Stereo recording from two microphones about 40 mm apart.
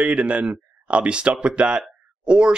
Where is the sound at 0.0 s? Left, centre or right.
Right.